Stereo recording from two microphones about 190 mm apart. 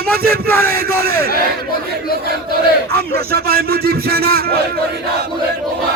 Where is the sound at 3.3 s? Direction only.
55° right (ahead or behind).